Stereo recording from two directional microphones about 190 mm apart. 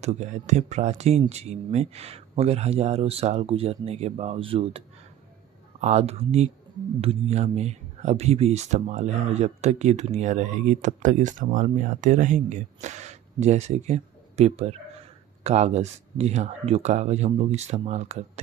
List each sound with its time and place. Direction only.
0.0 s speech: 35° right (ahead or behind)